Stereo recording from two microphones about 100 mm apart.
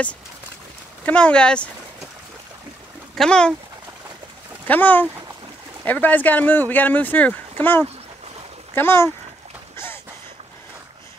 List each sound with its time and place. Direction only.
1.0 s speech: 10° left (ahead or behind)
3.2 s speech: 10° left (ahead or behind)
4.6 s speech: 15° left (ahead or behind)